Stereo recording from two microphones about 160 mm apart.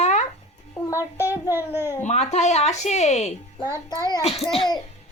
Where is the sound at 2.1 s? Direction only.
45° left (ahead or behind).